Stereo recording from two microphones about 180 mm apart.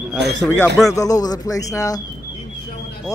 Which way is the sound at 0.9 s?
20° left (ahead or behind).